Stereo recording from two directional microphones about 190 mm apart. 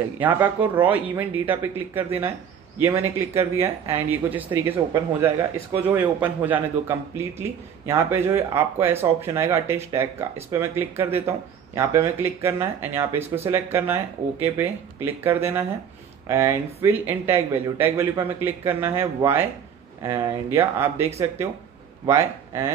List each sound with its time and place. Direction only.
0.2 s a man's voice: 10° right (ahead or behind)